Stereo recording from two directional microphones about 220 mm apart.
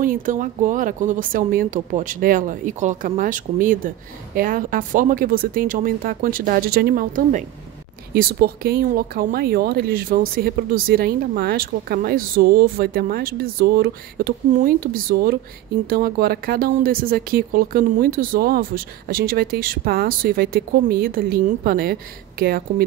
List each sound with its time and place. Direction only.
0.0 s speech: 35° right (ahead or behind)